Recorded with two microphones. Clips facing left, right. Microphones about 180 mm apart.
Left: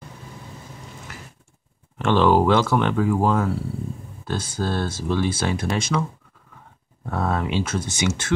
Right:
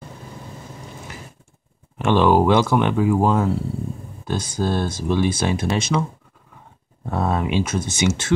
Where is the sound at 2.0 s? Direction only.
15° right (ahead or behind).